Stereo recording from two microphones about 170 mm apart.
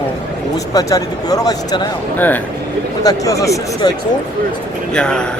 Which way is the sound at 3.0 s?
20° left (ahead or behind).